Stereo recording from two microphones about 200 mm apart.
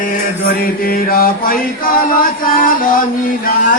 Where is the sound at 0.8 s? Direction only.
45° left (ahead or behind).